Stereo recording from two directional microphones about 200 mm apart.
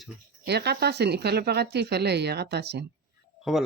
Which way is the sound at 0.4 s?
55° right (ahead or behind).